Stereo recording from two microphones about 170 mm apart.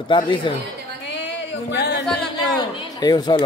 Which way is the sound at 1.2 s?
90° left.